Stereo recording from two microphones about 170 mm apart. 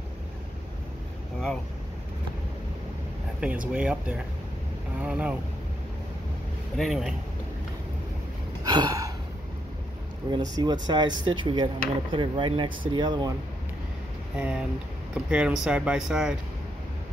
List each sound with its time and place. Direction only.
3.3 s speech: 5° right (ahead or behind)
5.0 s speech: 5° right (ahead or behind)
6.8 s speech: centre (ahead or behind)
8.6 s gasp: 25° right (ahead or behind)
10.3 s speech: 25° right (ahead or behind)
14.3 s speech: 5° right (ahead or behind)